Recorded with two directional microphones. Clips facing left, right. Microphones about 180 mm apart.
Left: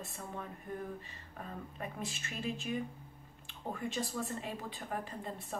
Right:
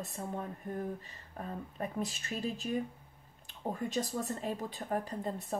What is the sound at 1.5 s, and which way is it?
A woman's voice, 35° right (ahead or behind).